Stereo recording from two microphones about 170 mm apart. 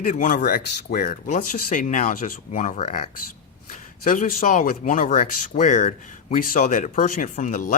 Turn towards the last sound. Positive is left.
turn(degrees=50)  # may be behind; listen again after turning